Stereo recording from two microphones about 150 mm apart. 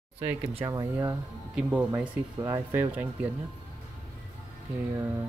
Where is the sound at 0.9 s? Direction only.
10° right (ahead or behind).